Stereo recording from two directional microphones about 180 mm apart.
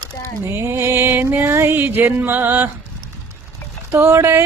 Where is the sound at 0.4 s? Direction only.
15° right (ahead or behind).